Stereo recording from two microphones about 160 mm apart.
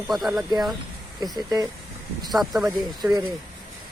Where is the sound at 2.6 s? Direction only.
20° right (ahead or behind).